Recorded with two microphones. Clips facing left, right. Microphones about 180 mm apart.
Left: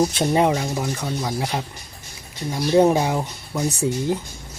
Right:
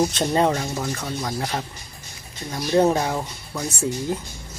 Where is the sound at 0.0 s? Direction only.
10° left (ahead or behind).